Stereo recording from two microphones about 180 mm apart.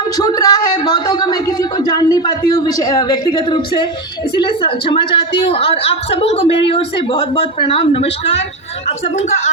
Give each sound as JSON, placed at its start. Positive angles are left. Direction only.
{"t": 0.2, "sound": "a woman's voice", "side_deg": 20}